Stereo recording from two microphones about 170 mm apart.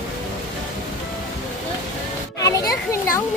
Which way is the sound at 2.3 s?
20° left (ahead or behind).